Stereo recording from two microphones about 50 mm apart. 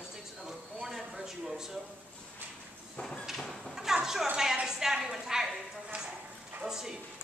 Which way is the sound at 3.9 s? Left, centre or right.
Centre.